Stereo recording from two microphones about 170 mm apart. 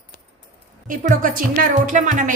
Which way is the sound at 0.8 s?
50° right (ahead or behind).